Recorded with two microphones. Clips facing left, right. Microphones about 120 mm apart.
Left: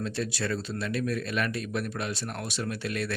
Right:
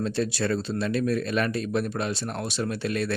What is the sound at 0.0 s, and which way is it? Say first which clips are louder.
Speech: right 5 dB; 30° right (ahead or behind).